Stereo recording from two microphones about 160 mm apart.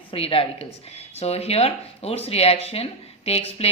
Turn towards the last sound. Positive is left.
turn(degrees=40)  # may be behind; listen again after turning